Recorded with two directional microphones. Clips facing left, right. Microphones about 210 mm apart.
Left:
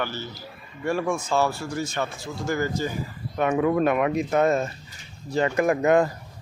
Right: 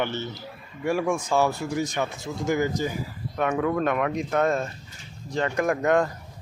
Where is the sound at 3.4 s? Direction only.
5° left (ahead or behind).